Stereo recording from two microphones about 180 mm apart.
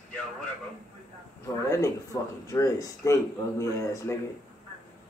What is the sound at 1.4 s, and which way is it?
Speech, 15° left (ahead or behind).